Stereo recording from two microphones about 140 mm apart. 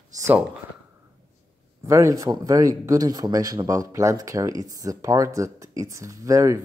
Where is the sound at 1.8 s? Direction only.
20° right (ahead or behind).